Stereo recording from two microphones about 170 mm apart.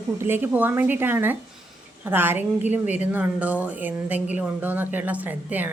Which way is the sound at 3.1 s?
10° right (ahead or behind).